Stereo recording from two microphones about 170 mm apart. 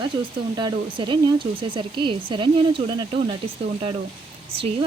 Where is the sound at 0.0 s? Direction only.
25° right (ahead or behind).